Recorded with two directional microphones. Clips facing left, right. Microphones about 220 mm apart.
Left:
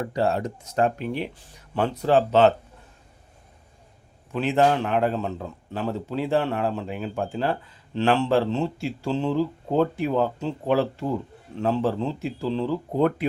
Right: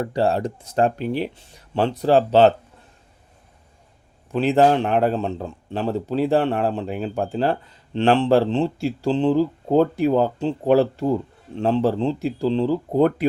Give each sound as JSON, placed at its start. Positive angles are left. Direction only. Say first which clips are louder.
{"t": 0.1, "sound": "a man's voice", "louder": "right 3 dB", "side_deg": -30}
{"t": 4.3, "sound": "a man's voice", "louder": "right 4 dB", "side_deg": -35}